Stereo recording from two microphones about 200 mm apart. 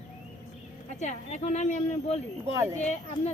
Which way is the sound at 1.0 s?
35° left (ahead or behind).